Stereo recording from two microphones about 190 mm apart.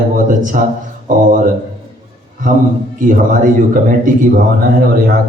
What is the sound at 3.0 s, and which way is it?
Speech, 45° right (ahead or behind).